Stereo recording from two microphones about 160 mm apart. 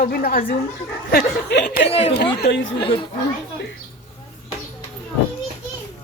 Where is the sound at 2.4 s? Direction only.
90° left.